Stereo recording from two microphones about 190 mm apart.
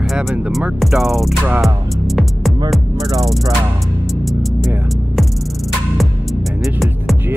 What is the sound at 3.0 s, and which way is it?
Music, 20° right (ahead or behind).